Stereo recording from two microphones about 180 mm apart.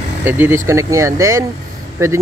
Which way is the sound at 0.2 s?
15° right (ahead or behind).